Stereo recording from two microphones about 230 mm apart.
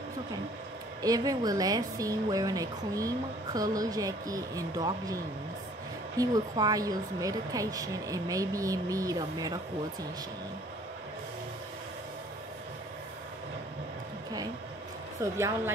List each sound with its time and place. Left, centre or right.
1.0 s speech: centre
15.3 s speech: centre